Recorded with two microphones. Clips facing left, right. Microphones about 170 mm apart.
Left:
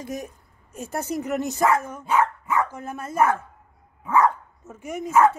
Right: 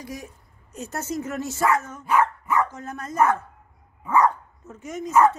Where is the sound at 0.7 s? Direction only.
10° left (ahead or behind).